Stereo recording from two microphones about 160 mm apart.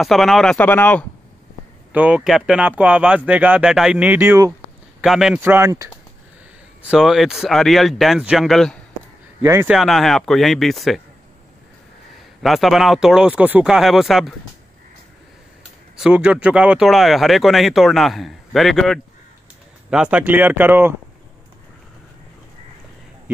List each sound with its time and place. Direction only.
0.0 s speech: centre (ahead or behind)
1.9 s speech: 10° right (ahead or behind)
5.0 s speech: centre (ahead or behind)
5.4 s speech: 15° right (ahead or behind)
6.8 s speech: 5° right (ahead or behind)
9.4 s speech: 20° right (ahead or behind)
9.7 s speech: centre (ahead or behind)
12.4 s speech: centre (ahead or behind)
16.0 s speech: 5° right (ahead or behind)